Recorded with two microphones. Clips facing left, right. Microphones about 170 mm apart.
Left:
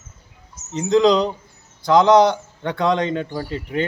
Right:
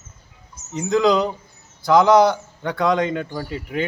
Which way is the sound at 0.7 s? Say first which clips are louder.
Left 2 dB; 20° left (ahead or behind).